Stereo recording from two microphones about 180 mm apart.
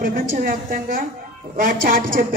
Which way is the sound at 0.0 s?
50° right (ahead or behind).